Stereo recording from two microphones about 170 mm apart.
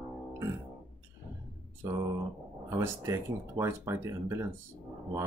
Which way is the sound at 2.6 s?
15° right (ahead or behind).